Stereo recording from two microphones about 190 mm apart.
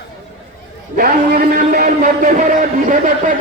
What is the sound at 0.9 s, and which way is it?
A man's voice, 50° right (ahead or behind).